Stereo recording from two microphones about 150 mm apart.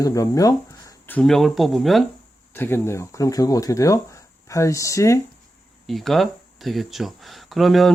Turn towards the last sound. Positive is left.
turn(degrees=0)  # may be behind; listen again after turning